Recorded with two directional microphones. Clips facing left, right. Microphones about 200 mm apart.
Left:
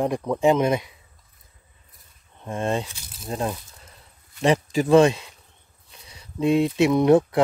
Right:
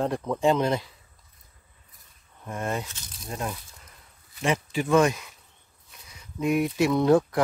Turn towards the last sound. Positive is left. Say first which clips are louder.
# left 3 dB
turn(degrees=20)  # may be behind; listen again after turning